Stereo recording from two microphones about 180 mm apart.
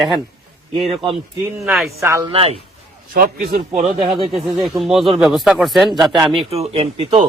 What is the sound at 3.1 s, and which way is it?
Speech, 55° right (ahead or behind).